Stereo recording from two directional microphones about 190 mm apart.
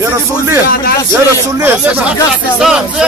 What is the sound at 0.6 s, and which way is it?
Speech, 55° left (ahead or behind).